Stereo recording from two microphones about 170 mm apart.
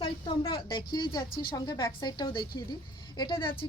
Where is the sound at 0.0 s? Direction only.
25° left (ahead or behind).